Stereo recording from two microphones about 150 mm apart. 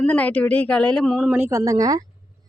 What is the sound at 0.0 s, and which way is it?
Speech, 10° left (ahead or behind).